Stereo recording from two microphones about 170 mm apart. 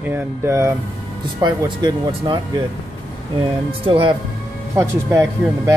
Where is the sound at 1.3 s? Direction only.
25° right (ahead or behind).